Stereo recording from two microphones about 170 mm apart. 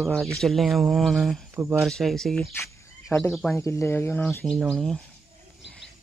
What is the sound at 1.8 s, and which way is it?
Speech, centre (ahead or behind).